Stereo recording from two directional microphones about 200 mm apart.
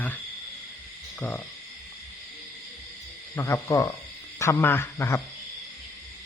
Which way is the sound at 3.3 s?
15° left (ahead or behind).